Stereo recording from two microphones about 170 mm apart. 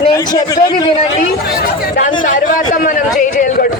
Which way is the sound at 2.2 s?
50° left (ahead or behind).